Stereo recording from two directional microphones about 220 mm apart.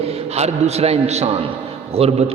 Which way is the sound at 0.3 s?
30° right (ahead or behind).